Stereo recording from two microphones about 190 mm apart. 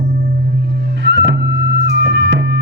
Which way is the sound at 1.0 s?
70° right (ahead or behind).